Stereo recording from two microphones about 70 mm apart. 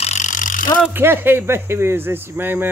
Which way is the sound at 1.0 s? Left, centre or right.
Right.